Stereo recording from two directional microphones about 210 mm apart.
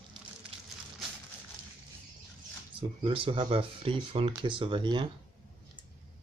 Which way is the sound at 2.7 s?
25° right (ahead or behind).